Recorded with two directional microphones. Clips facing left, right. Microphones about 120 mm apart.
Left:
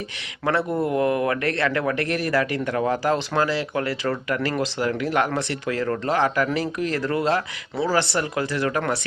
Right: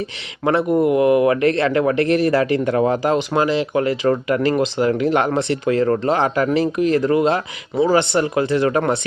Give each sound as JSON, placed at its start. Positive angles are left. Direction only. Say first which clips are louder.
{"t": 0.4, "sound": "speech", "louder": "right 7 dB", "side_deg": -20}